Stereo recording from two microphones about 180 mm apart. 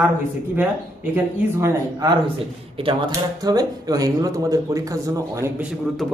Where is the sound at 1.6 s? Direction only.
20° right (ahead or behind).